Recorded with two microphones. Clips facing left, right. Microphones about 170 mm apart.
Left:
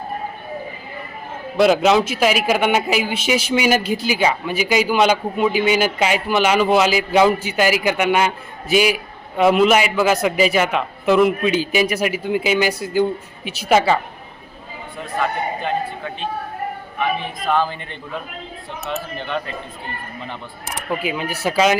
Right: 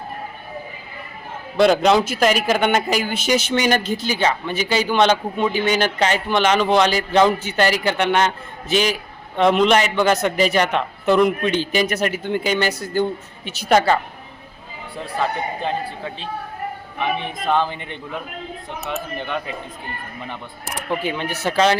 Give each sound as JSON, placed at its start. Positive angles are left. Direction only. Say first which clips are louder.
{"t": 1.5, "sound": "a man's voice", "louder": "even", "side_deg": 0}
{"t": 17.0, "sound": "a man's voice", "louder": "left 1 dB", "side_deg": -25}
{"t": 21.0, "sound": "a man's voice", "louder": "left 1 dB", "side_deg": 5}